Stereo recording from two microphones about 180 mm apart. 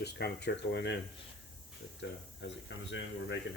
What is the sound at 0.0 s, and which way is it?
Speech, 65° left (ahead or behind).